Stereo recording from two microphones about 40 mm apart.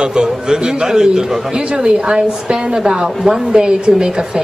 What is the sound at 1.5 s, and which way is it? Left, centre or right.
A man's voice, right.